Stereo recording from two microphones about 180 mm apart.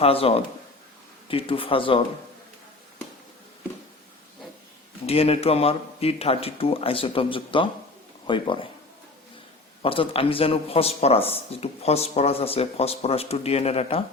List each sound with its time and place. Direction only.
0.0 s a man's voice: 35° left (ahead or behind)
5.0 s a man's voice: 35° left (ahead or behind)
9.8 s a man's voice: 30° left (ahead or behind)